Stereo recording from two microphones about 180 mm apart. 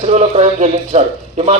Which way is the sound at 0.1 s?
40° right (ahead or behind).